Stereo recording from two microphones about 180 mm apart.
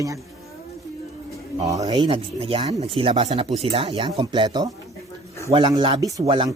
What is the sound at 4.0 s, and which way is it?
Speech, 20° right (ahead or behind).